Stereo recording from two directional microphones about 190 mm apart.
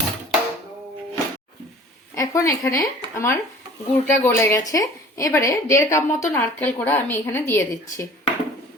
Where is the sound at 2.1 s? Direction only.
15° left (ahead or behind).